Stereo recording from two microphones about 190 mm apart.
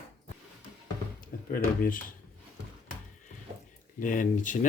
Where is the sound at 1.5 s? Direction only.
50° left (ahead or behind).